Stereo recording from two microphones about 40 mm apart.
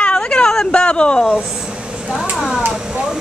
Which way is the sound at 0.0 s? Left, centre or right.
Left.